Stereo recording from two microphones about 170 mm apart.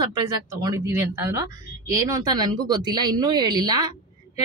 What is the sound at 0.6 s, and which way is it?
Speech, 20° right (ahead or behind).